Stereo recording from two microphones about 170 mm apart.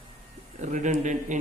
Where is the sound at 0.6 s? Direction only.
50° right (ahead or behind).